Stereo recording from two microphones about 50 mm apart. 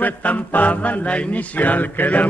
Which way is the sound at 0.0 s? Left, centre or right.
Left.